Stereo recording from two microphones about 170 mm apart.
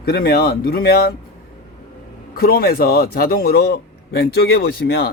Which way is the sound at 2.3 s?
60° left (ahead or behind).